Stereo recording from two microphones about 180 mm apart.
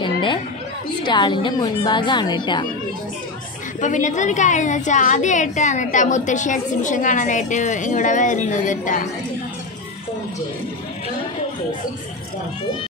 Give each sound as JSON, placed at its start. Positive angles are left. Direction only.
{"t": 0.0, "sound": "chatter", "side_deg": 25}
{"t": 1.0, "sound": "a woman's voice", "side_deg": 25}
{"t": 3.8, "sound": "a woman's voice", "side_deg": 45}